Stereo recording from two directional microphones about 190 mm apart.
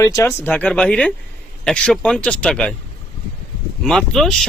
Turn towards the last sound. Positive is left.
turn(degrees=0)  # may be behind; listen again after turning